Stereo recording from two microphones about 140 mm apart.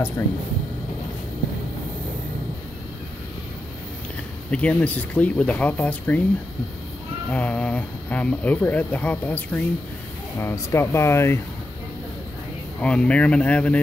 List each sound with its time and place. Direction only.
0.2 s speech: 20° left (ahead or behind)
4.5 s speech: 10° left (ahead or behind)
7.2 s speech: 10° left (ahead or behind)
12.8 s speech: 5° left (ahead or behind)